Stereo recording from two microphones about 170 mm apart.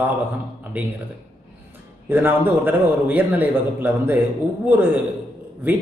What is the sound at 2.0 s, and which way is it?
A man's voice, 10° right (ahead or behind).